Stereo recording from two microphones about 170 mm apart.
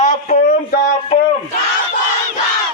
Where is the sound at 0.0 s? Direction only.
50° left (ahead or behind).